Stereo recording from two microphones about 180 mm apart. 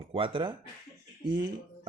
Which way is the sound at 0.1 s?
30° right (ahead or behind).